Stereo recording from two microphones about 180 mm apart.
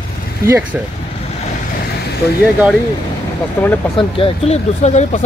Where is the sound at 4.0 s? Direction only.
30° left (ahead or behind).